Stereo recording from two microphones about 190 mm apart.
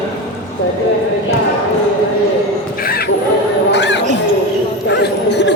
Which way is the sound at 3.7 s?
65° left (ahead or behind).